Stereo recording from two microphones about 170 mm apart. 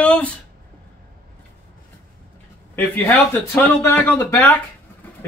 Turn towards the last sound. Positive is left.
turn(degrees=10)  # may be behind; listen again after turning